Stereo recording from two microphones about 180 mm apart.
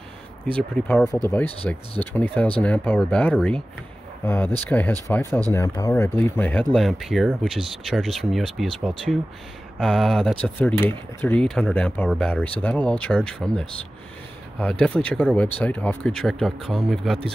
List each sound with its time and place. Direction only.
0.6 s speech: 10° left (ahead or behind)